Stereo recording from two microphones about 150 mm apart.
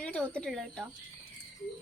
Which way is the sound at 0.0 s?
10° left (ahead or behind).